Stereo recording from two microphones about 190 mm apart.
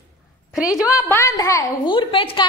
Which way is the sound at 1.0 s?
15° left (ahead or behind).